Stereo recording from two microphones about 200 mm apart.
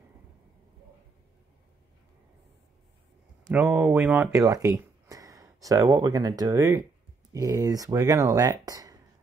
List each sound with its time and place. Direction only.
3.4 s speech: 10° right (ahead or behind)